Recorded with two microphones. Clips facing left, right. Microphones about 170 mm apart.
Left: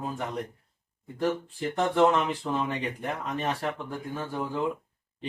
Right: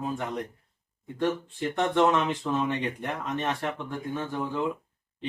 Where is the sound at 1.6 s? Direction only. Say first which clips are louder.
Left 1 dB; 10° left (ahead or behind).